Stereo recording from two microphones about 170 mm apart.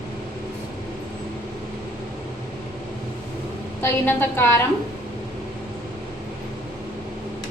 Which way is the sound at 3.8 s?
15° left (ahead or behind).